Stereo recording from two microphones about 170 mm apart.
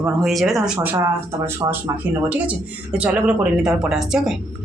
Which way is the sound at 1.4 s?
15° right (ahead or behind).